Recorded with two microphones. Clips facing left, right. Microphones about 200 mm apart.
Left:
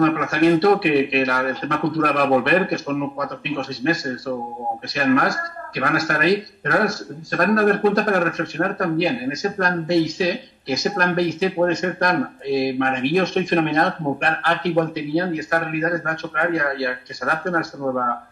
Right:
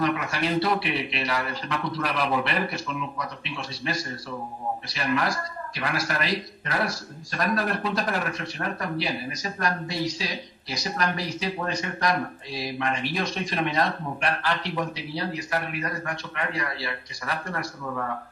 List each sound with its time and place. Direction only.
0.0 s speech: 50° left (ahead or behind)